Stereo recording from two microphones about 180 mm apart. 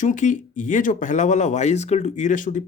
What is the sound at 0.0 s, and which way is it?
Speech, 45° left (ahead or behind).